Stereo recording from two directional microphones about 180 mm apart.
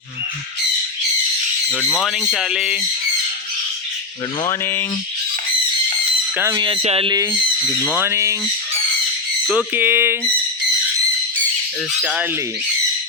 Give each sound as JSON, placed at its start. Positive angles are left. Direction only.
{"t": 1.7, "sound": "speech", "side_deg": 5}
{"t": 4.4, "sound": "a sound", "side_deg": 15}
{"t": 6.3, "sound": "speech", "side_deg": -15}
{"t": 6.6, "sound": "speech", "side_deg": -30}
{"t": 9.5, "sound": "speech", "side_deg": -10}